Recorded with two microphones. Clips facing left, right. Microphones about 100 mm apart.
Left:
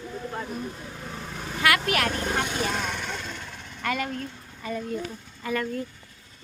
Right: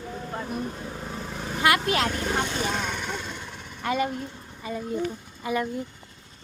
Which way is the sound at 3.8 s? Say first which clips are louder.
Right 3 dB; 20° right (ahead or behind).